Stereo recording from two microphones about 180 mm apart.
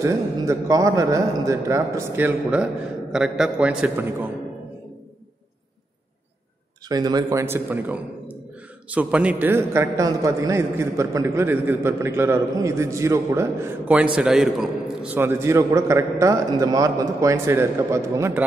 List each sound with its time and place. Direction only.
0.0 s a man's voice: 20° right (ahead or behind)
6.9 s a man's voice: 20° right (ahead or behind)